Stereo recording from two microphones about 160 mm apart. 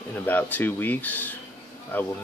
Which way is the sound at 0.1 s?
10° left (ahead or behind).